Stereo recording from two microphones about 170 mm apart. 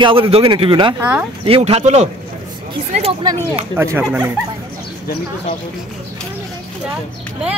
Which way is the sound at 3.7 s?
15° right (ahead or behind).